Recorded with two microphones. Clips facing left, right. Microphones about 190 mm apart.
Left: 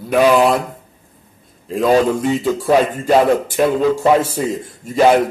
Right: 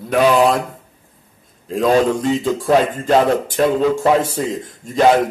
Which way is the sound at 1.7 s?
Centre (ahead or behind).